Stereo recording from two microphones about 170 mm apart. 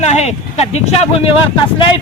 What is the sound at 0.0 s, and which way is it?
Speech, 40° left (ahead or behind).